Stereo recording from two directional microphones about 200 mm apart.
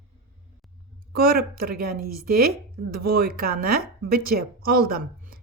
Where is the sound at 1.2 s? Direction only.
50° right (ahead or behind).